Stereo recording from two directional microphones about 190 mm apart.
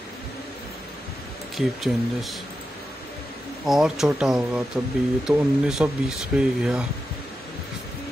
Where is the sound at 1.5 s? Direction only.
Centre (ahead or behind).